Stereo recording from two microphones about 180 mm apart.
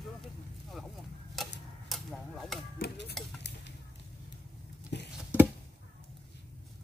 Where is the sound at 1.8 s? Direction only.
Centre (ahead or behind).